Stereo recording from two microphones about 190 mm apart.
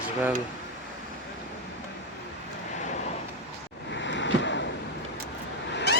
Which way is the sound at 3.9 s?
70° left (ahead or behind).